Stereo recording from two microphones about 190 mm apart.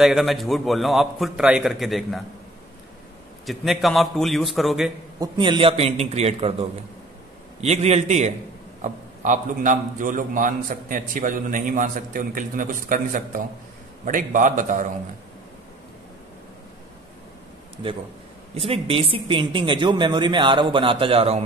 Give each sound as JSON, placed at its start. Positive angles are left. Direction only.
{"t": 0.0, "sound": "a man's voice", "side_deg": 0}
{"t": 3.4, "sound": "a man's voice", "side_deg": 0}
{"t": 5.2, "sound": "a man's voice", "side_deg": -25}
{"t": 18.5, "sound": "speech", "side_deg": -30}